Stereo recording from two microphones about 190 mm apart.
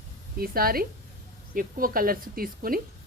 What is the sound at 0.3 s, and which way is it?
Speech, 50° right (ahead or behind).